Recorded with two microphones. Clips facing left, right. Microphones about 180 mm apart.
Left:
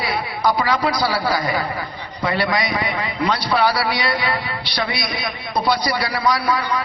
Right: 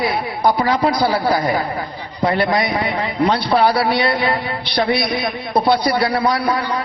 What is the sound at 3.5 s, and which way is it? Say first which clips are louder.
Speech: right 2 dB; 25° right (ahead or behind).